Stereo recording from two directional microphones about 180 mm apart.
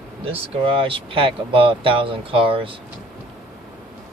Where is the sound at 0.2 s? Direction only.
30° right (ahead or behind).